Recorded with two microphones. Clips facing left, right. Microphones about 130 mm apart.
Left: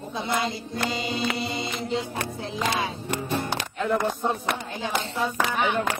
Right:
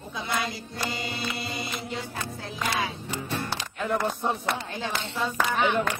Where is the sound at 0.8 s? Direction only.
20° left (ahead or behind).